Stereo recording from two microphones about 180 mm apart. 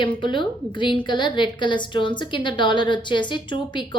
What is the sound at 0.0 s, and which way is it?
A woman's voice, 25° left (ahead or behind).